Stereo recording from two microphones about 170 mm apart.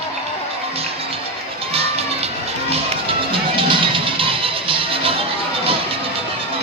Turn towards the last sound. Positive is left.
turn(degrees=-35)  # may be behind; listen again after turning